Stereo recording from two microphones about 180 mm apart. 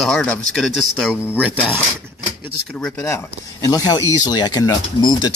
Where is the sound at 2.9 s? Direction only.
15° left (ahead or behind).